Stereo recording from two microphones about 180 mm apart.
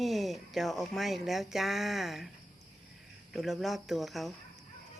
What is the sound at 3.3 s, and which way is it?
A woman's voice, centre (ahead or behind).